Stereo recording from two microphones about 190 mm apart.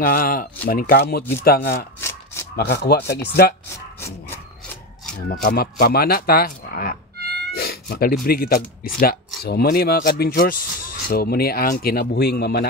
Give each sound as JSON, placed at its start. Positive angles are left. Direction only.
{"t": 0.0, "sound": "speech", "side_deg": 50}
{"t": 2.0, "sound": "a sound", "side_deg": 15}
{"t": 2.5, "sound": "speech", "side_deg": 60}
{"t": 5.3, "sound": "speech", "side_deg": 50}